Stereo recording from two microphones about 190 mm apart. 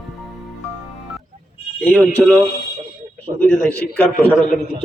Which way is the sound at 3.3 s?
30° right (ahead or behind).